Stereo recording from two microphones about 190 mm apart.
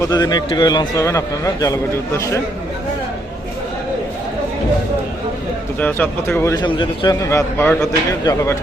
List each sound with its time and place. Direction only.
0.0 s a man's voice: 20° left (ahead or behind)
5.8 s a man's voice: 10° left (ahead or behind)